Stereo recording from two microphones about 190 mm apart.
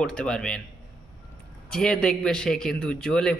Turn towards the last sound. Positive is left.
turn(degrees=5)  # may be behind; listen again after turning